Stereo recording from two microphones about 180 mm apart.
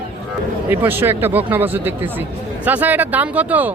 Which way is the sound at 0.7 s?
10° right (ahead or behind).